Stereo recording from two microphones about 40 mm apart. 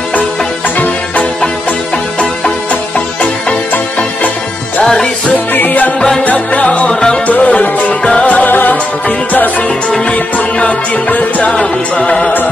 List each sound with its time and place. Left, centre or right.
5.5 s music: left
5.9 s music: centre
6.2 s music: left
6.9 s music: centre
7.2 s music: left
8.5 s music: left
10.0 s music: left
11.5 s music: left